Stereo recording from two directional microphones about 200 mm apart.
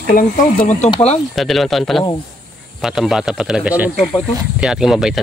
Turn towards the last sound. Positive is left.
turn(degrees=-5)  # may be behind; listen again after turning